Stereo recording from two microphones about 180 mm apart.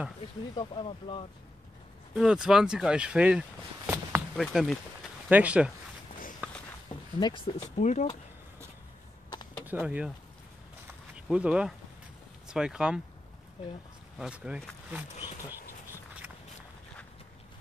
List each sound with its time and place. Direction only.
0.6 s speech: 30° left (ahead or behind)
2.1 s speech: 5° right (ahead or behind)
4.4 s speech: centre (ahead or behind)
6.4 s a sound: 10° right (ahead or behind)
7.2 s speech: 25° left (ahead or behind)
7.7 s speech: 40° left (ahead or behind)
9.7 s speech: 10° right (ahead or behind)
11.1 s speech: 5° right (ahead or behind)
14.1 s speech: 5° right (ahead or behind)
15.1 s speech: 25° left (ahead or behind)